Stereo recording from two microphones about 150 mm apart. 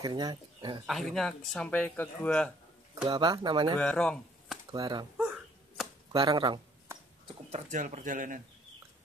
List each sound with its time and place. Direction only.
0.0 s speech: 25° right (ahead or behind)
0.8 s speech: centre (ahead or behind)
3.1 s speech: 30° right (ahead or behind)
3.8 s speech: 5° left (ahead or behind)
4.6 s speech: 25° right (ahead or behind)
5.1 s hiccup: 5° right (ahead or behind)
6.1 s a sound: 30° right (ahead or behind)
7.5 s speech: 55° right (ahead or behind)